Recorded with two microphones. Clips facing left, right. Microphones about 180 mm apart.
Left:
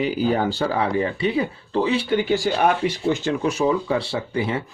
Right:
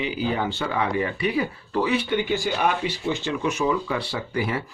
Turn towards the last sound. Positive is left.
turn(degrees=25)  # may be behind; listen again after turning